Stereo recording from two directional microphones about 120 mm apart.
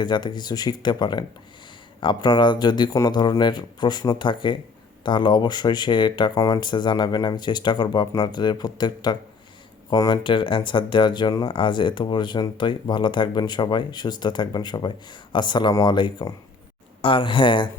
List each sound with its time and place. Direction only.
0.0 s speech: 40° left (ahead or behind)
10.2 s speech: 45° left (ahead or behind)